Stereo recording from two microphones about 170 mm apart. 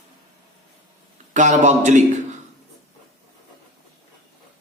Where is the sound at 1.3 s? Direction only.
45° right (ahead or behind).